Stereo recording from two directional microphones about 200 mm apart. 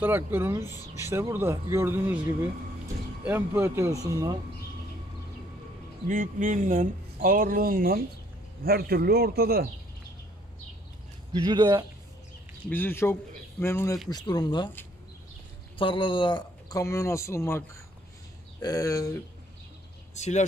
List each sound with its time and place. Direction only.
0.0 s speech: 10° right (ahead or behind)
3.3 s speech: 10° right (ahead or behind)
6.0 s speech: 40° right (ahead or behind)
11.3 s a man's voice: 20° right (ahead or behind)
12.6 s a man's voice: 10° left (ahead or behind)
15.8 s a man's voice: 25° left (ahead or behind)
20.2 s speech: 35° left (ahead or behind)